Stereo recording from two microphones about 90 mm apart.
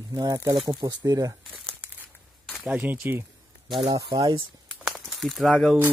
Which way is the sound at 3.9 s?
45° right (ahead or behind).